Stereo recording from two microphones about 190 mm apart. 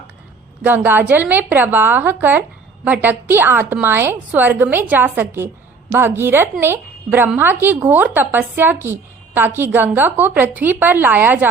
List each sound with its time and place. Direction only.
0.6 s a woman's voice: 10° right (ahead or behind)